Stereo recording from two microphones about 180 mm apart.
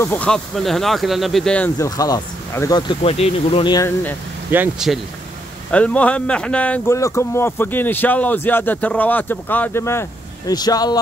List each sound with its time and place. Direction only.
0.0 s speech: 10° left (ahead or behind)
1.8 s speech: 20° left (ahead or behind)
2.9 s speech: 35° left (ahead or behind)
4.5 s speech: 5° right (ahead or behind); by 11.0 s 20° left (ahead or behind)